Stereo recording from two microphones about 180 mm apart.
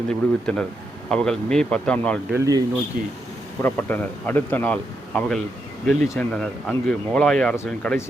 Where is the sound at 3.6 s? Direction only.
10° left (ahead or behind).